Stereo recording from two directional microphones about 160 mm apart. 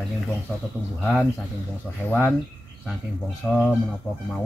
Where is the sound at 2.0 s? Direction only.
10° left (ahead or behind).